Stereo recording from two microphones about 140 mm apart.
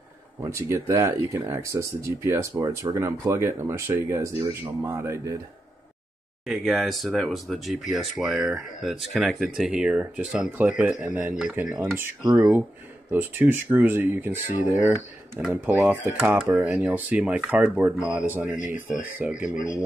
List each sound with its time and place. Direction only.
0.4 s speech: 20° right (ahead or behind)
6.4 s speech: 5° right (ahead or behind)